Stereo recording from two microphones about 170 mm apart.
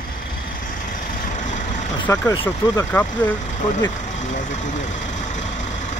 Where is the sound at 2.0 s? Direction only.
20° left (ahead or behind).